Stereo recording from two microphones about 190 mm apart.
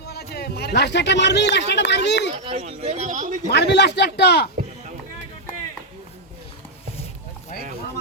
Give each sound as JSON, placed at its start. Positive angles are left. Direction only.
{"t": 0.0, "sound": "speech", "side_deg": 55}
{"t": 2.4, "sound": "speech", "side_deg": -35}
{"t": 3.5, "sound": "speech", "side_deg": 65}